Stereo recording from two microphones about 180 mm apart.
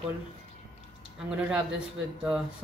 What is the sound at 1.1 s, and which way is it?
Speech, 5° right (ahead or behind).